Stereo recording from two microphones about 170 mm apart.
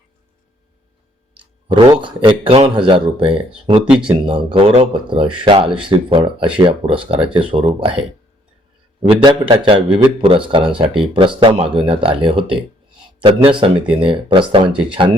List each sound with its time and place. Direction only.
1.6 s a man's voice: 30° right (ahead or behind)